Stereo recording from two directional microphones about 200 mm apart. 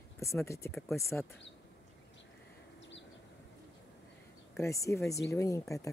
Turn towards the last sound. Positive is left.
turn(degrees=15)  # may be behind; listen again after turning